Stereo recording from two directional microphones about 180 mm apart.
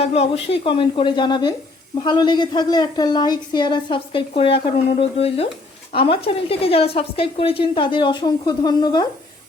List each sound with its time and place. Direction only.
0.0 s a woman's voice: 35° left (ahead or behind)